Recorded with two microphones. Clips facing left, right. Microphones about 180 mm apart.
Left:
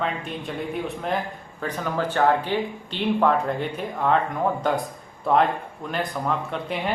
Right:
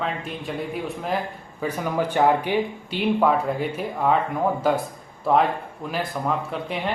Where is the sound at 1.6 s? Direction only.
10° right (ahead or behind).